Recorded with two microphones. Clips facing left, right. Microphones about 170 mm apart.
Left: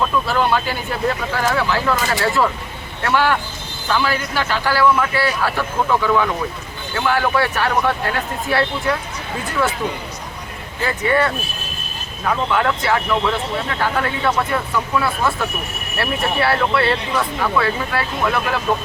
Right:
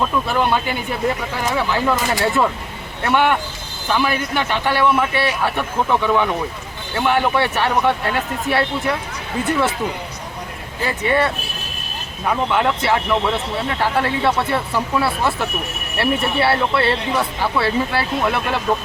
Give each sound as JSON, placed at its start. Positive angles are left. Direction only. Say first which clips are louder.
{"t": 0.3, "sound": "speech", "louder": "even", "side_deg": -20}
{"t": 10.8, "sound": "speech", "louder": "even", "side_deg": -25}
{"t": 12.5, "sound": "speech", "louder": "even", "side_deg": -20}
{"t": 13.8, "sound": "speech", "louder": "right 2 dB", "side_deg": -30}